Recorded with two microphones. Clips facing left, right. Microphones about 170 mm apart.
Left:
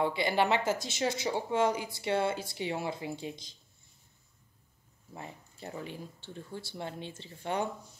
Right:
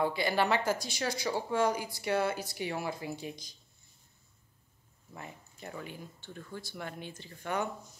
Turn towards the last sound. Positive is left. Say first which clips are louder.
# left 1 dB
turn(degrees=25)  # may be behind; listen again after turning